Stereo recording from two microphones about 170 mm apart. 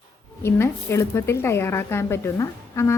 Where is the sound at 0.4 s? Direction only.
15° left (ahead or behind).